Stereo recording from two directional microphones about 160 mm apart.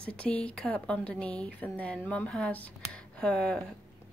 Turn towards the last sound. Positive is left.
turn(degrees=10)  # may be behind; listen again after turning